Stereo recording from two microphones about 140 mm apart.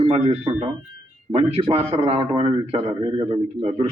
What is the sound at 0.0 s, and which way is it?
A man's voice, 45° right (ahead or behind).